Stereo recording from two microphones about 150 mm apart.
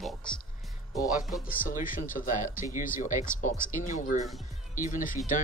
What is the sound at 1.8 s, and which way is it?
Speech, 65° left (ahead or behind).